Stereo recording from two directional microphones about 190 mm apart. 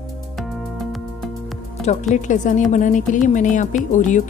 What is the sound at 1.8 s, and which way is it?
Music, 35° left (ahead or behind).